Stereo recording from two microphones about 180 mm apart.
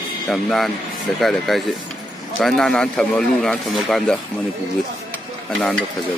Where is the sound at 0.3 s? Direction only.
Centre (ahead or behind).